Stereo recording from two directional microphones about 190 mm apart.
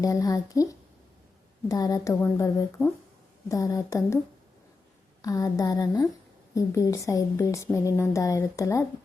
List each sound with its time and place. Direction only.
0.0 s a woman's voice: 20° left (ahead or behind)
5.2 s a woman's voice: 20° left (ahead or behind)